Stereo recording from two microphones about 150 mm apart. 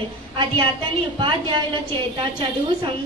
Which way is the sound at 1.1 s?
35° right (ahead or behind).